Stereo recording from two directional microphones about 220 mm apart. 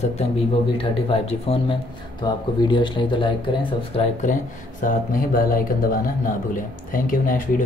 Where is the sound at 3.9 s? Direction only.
35° left (ahead or behind).